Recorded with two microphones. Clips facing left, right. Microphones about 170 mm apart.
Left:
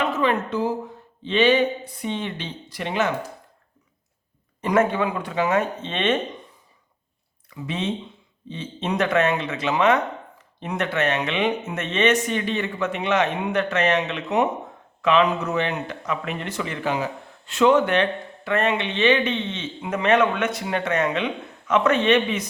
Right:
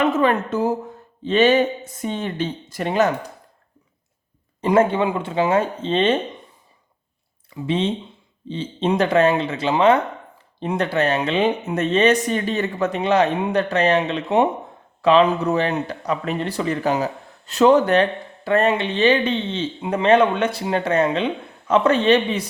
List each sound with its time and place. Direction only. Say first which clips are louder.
0.0 s a woman's voice: right 4 dB; 50° right (ahead or behind)
4.6 s speech: right 3 dB; 30° right (ahead or behind)
7.5 s speech: right 5 dB; 30° right (ahead or behind)